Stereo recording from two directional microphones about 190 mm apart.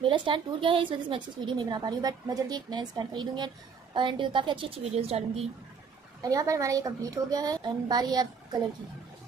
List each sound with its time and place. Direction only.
0.0 s a woman's voice: 25° right (ahead or behind)
6.2 s a woman's voice: 15° right (ahead or behind)